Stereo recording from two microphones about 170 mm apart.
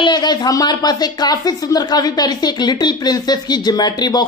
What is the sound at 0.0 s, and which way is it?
Speech, 25° left (ahead or behind).